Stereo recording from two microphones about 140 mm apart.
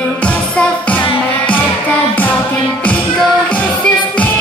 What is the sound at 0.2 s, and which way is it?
Music, 10° left (ahead or behind).